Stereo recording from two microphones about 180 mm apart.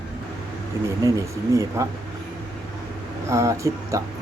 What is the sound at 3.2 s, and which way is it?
Speech, 15° right (ahead or behind).